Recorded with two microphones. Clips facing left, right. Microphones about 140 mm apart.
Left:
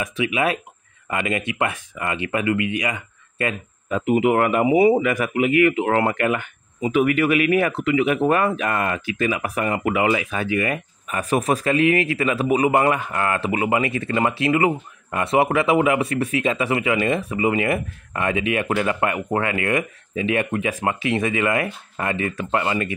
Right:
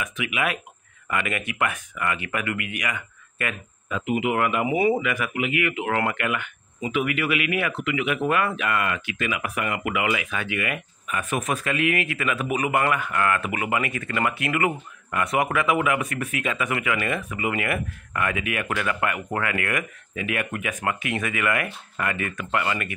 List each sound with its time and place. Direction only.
0.0 s speech: 35° left (ahead or behind)
4.0 s speech: 45° left (ahead or behind)
4.6 s speech: 30° left (ahead or behind)
5.0 s speech: 40° left (ahead or behind)